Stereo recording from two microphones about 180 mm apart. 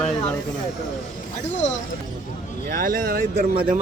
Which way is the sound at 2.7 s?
50° right (ahead or behind).